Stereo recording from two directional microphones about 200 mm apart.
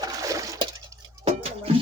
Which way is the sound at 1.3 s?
30° right (ahead or behind).